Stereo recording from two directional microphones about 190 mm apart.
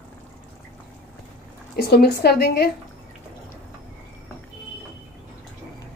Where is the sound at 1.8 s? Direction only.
55° left (ahead or behind).